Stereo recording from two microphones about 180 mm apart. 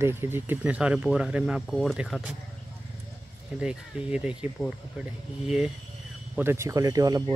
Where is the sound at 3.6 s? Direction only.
5° right (ahead or behind).